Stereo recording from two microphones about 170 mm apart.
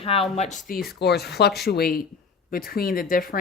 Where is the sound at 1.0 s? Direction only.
75° left (ahead or behind).